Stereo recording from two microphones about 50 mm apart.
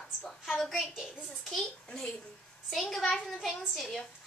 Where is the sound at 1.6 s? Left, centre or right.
Centre.